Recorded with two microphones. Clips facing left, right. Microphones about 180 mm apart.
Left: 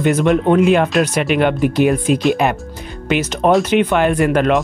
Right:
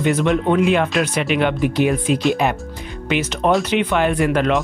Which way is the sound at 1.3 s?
50° left (ahead or behind).